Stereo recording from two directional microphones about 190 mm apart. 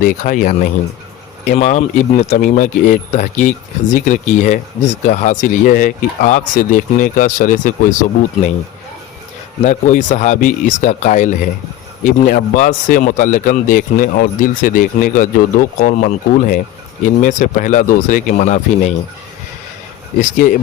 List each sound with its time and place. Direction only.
0.0 s speech: 45° left (ahead or behind)
9.6 s speech: 40° left (ahead or behind)